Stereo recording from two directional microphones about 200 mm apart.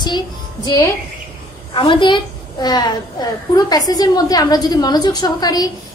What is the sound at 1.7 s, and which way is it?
A woman's voice, 25° left (ahead or behind).